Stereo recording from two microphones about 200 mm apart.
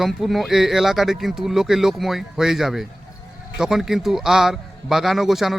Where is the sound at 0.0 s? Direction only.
Centre (ahead or behind).